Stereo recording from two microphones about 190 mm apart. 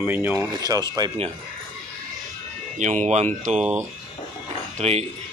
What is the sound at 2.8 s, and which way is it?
Speech, 40° right (ahead or behind).